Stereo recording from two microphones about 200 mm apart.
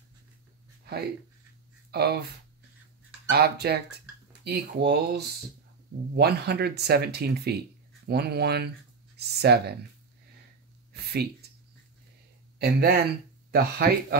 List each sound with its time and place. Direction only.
1.9 s speech: 50° right (ahead or behind)
3.3 s speech: 55° right (ahead or behind)
10.9 s a sound: 55° right (ahead or behind)
12.5 s speech: 50° right (ahead or behind)